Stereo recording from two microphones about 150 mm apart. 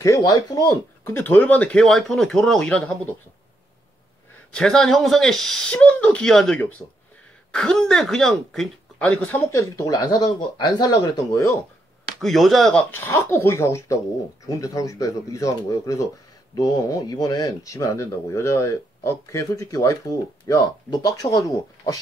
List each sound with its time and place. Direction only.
0.0 s speech: 25° left (ahead or behind); by 3.2 s 5° left (ahead or behind)
4.6 s speech: 5° left (ahead or behind)
9.5 s speech: 20° left (ahead or behind)
12.2 s speech: centre (ahead or behind)
12.9 s speech: 15° left (ahead or behind)